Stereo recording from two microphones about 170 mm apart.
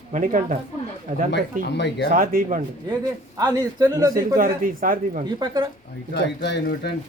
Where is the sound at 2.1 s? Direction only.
55° right (ahead or behind).